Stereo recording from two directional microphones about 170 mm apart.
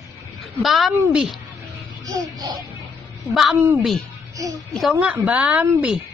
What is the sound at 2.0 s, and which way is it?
Speech, 20° right (ahead or behind).